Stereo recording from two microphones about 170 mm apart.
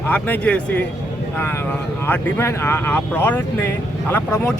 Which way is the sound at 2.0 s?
15° left (ahead or behind).